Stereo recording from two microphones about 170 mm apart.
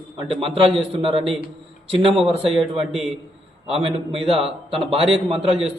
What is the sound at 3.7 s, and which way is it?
A man's voice, 35° right (ahead or behind).